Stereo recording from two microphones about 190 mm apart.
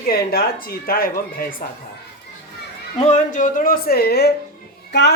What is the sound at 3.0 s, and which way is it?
A child's voice, 40° left (ahead or behind).